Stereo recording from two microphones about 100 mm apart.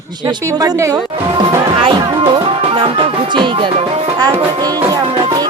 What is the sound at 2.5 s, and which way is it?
Music, 65° right (ahead or behind).